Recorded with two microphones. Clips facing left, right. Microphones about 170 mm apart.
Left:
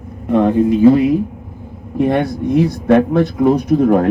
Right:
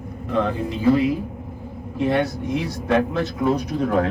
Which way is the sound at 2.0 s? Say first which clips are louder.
Left 6 dB; 55° left (ahead or behind).